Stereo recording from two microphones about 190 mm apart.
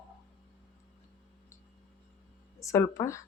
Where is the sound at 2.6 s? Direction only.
15° left (ahead or behind).